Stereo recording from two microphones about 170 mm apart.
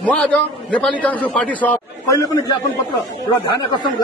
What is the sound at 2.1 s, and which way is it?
Speech, 20° left (ahead or behind).